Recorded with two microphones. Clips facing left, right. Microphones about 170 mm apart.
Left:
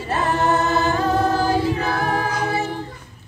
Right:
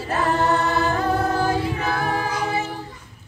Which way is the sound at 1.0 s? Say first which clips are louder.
Left 2 dB; 30° left (ahead or behind).